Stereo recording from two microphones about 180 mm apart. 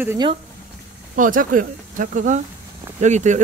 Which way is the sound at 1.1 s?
50° right (ahead or behind).